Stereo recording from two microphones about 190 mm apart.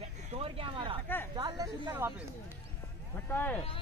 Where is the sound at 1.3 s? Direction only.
20° right (ahead or behind).